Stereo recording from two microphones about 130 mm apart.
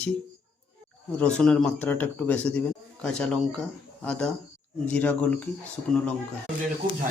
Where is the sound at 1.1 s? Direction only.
10° left (ahead or behind).